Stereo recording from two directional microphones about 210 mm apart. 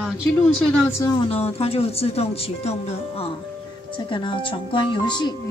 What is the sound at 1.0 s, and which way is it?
Speech, 25° left (ahead or behind).